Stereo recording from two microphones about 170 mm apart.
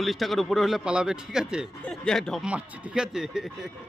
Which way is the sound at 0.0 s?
Centre (ahead or behind).